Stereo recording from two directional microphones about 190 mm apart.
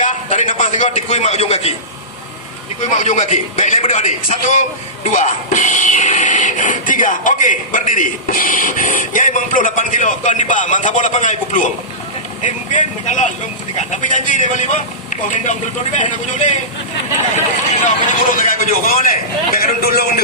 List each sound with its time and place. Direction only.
0.0 s a man's voice: 40° left (ahead or behind)
2.9 s a man's voice: 40° left (ahead or behind)